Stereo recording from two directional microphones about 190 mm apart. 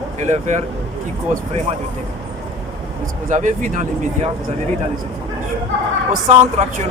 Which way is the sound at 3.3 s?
40° right (ahead or behind).